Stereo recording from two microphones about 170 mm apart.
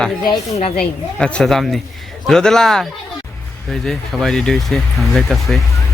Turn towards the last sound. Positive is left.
turn(degrees=0)  # may be behind; listen again after turning